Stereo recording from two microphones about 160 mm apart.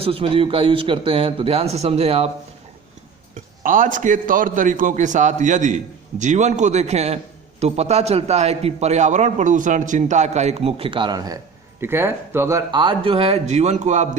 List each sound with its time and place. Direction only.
0.0 s speech: 35° right (ahead or behind)
3.6 s a man's voice: 55° right (ahead or behind)